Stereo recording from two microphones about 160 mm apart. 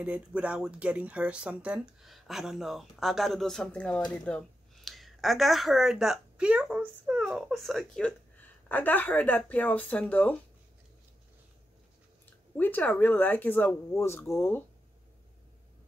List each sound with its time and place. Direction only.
0.0 s speech: 10° right (ahead or behind); by 10.3 s 10° left (ahead or behind)
12.5 s speech: 10° left (ahead or behind)